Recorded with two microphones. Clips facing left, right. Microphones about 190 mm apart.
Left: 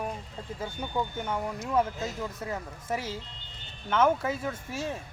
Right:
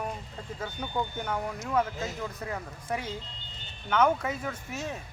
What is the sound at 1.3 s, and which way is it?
Speech, 30° left (ahead or behind).